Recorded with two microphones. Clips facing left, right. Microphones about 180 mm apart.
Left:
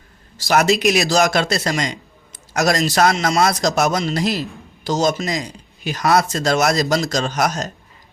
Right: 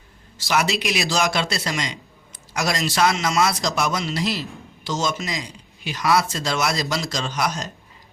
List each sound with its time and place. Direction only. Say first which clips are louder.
0.3 s a man's voice: left 6 dB; 40° left (ahead or behind)